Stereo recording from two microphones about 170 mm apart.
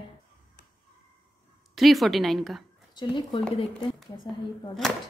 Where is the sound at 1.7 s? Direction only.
Centre (ahead or behind).